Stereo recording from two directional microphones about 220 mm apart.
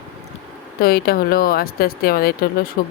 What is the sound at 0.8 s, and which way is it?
Speech, 45° left (ahead or behind).